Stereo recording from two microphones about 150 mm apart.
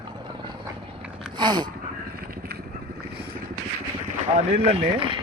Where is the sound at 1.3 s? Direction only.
30° right (ahead or behind).